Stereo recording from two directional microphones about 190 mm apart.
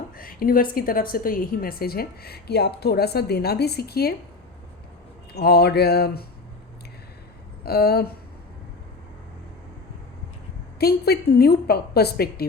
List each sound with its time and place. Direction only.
0.2 s a woman's voice: 50° left (ahead or behind)
5.3 s a woman's voice: 60° left (ahead or behind)
7.6 s a woman's voice: 55° left (ahead or behind)
10.8 s a woman's voice: 55° left (ahead or behind)